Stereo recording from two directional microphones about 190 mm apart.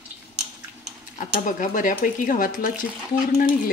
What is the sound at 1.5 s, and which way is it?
Speech, 45° left (ahead or behind).